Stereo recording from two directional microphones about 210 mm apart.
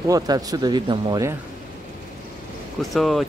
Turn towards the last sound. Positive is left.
turn(degrees=0)  # may be behind; listen again after turning